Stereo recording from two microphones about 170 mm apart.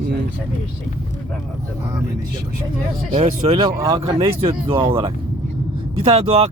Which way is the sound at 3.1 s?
35° right (ahead or behind).